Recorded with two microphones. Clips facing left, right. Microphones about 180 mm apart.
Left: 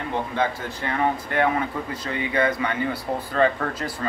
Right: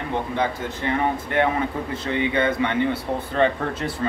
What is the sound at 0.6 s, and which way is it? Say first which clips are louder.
Speech: right 2 dB; 20° right (ahead or behind).